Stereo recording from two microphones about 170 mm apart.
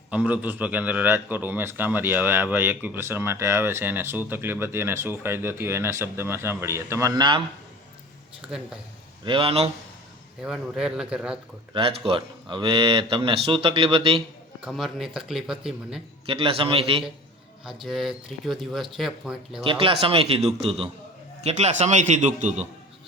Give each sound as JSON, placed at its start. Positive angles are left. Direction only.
{"t": 0.1, "sound": "a man's voice", "side_deg": -10}
{"t": 9.2, "sound": "speech", "side_deg": -30}
{"t": 10.4, "sound": "speech", "side_deg": -5}
{"t": 11.7, "sound": "speech", "side_deg": -30}
{"t": 14.6, "sound": "speech", "side_deg": 0}
{"t": 16.2, "sound": "speech", "side_deg": -30}
{"t": 17.7, "sound": "speech", "side_deg": 0}
{"t": 19.6, "sound": "a man's voice", "side_deg": -30}